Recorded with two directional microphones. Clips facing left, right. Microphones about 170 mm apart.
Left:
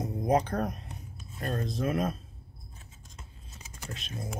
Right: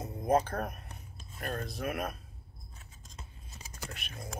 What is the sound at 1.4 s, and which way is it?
Speech, 25° left (ahead or behind).